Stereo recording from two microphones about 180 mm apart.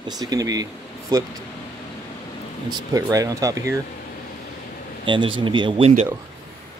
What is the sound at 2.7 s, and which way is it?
Speech, 20° right (ahead or behind).